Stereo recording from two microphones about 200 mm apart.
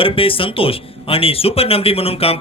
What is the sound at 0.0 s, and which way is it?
Speech, 25° left (ahead or behind).